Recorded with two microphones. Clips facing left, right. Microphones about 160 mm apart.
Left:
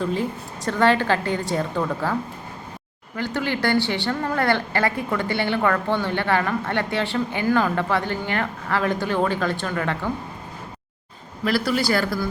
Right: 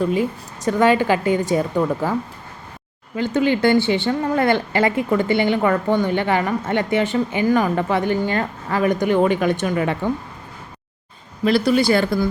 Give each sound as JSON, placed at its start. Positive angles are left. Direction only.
{"t": 0.0, "sound": "speech", "side_deg": -10}
{"t": 3.2, "sound": "speech", "side_deg": -15}
{"t": 11.4, "sound": "speech", "side_deg": -20}